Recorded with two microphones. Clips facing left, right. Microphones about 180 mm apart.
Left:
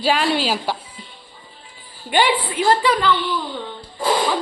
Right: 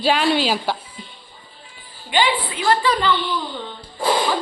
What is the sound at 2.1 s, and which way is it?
Speech, 50° left (ahead or behind).